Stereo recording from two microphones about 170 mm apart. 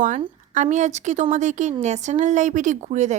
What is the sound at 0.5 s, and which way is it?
A woman's voice, 45° right (ahead or behind).